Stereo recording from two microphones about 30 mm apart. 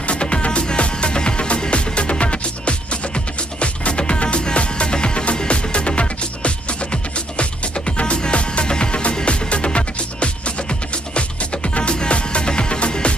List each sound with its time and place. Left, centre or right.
0.1 s music: left